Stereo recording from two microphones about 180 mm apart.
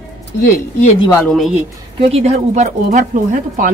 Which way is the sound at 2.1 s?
35° right (ahead or behind).